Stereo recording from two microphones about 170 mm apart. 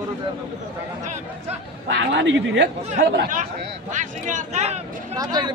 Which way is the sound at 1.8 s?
90° right.